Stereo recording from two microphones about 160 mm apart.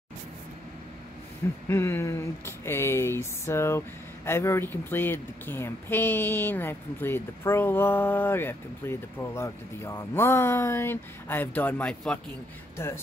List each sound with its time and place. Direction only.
1.7 s speech: 15° left (ahead or behind)